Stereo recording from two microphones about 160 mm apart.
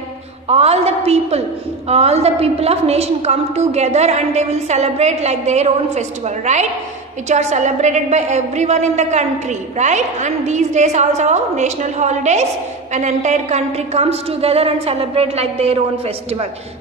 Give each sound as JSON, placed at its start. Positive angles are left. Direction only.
{"t": 0.5, "sound": "a woman's voice", "side_deg": -40}